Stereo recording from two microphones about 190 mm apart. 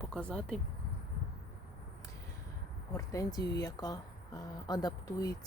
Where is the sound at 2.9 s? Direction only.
20° left (ahead or behind).